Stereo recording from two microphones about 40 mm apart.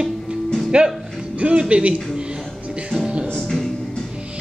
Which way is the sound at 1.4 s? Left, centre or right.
Right.